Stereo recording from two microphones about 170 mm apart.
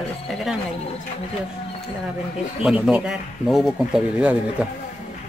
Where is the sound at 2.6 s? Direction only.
5° right (ahead or behind).